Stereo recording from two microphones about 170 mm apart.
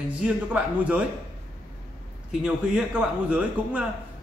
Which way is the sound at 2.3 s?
5° right (ahead or behind).